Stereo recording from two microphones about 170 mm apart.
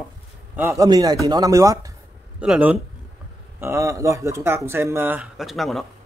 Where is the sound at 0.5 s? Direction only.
15° right (ahead or behind).